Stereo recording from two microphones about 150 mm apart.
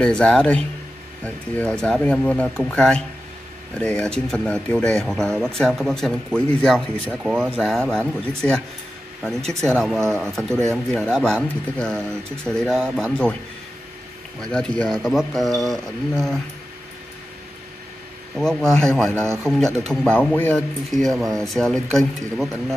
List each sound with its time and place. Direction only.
0.0 s speech: 5° left (ahead or behind)
7.1 s speech: 10° right (ahead or behind)
7.6 s speech: 5° left (ahead or behind)
14.4 s speech: 5° left (ahead or behind)
18.3 s speech: 5° left (ahead or behind)
19.2 s speech: 15° right (ahead or behind)
19.9 s speech: 5° left (ahead or behind)